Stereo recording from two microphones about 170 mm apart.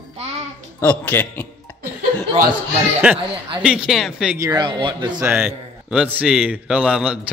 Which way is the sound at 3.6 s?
5° right (ahead or behind).